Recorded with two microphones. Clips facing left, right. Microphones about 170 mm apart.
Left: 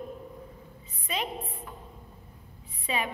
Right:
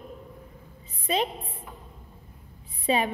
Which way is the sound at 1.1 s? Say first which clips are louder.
Right 7 dB; 30° right (ahead or behind).